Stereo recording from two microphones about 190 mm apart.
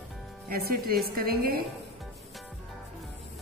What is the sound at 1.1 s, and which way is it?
Speech, 55° right (ahead or behind).